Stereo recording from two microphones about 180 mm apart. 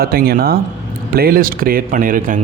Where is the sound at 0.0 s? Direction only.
55° right (ahead or behind).